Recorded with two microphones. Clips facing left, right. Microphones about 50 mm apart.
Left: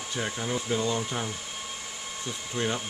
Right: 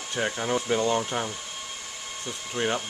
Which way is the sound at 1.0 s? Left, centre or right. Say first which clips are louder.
Right 3 dB; centre.